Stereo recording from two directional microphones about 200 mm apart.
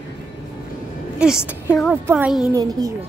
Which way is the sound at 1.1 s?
5° right (ahead or behind).